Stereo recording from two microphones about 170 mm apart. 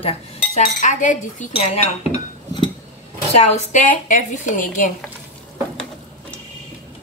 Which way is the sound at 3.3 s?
40° left (ahead or behind).